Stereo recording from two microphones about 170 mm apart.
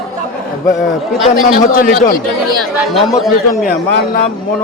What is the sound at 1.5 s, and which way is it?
Speech, 55° left (ahead or behind).